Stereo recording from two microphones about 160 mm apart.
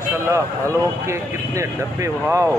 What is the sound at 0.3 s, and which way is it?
Speech, 15° right (ahead or behind).